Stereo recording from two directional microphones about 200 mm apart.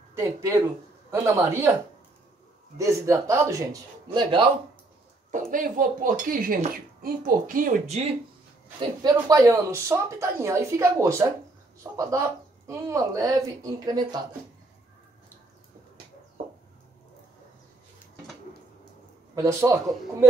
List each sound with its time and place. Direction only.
0.1 s speech: 15° right (ahead or behind)
2.8 s speech: 15° right (ahead or behind)
5.5 s speech: 45° right (ahead or behind)
9.3 s speech: 15° right (ahead or behind)
19.3 s speech: 15° right (ahead or behind)